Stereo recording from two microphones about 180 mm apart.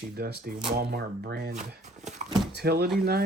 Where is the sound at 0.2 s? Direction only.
60° right (ahead or behind).